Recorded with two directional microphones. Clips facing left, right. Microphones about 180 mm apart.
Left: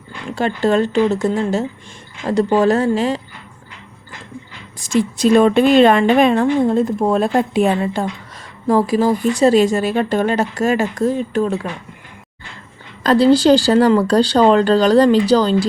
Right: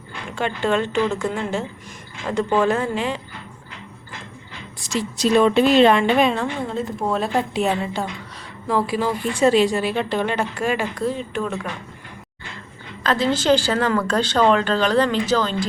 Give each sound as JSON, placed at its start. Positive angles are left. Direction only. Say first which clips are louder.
{"t": 0.3, "sound": "speech", "louder": "left 5 dB", "side_deg": 40}
{"t": 4.9, "sound": "a woman's voice", "louder": "left 6 dB", "side_deg": 55}
{"t": 13.0, "sound": "speech", "louder": "left 9 dB", "side_deg": 35}